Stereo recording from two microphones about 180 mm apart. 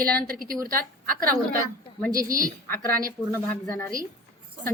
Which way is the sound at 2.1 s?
20° right (ahead or behind).